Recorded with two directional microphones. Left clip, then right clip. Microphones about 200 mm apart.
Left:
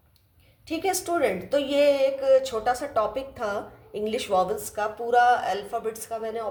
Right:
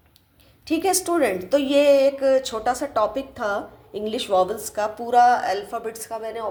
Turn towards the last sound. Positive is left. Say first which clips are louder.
# right 1 dB
turn(degrees=-25)  # may be behind; listen again after turning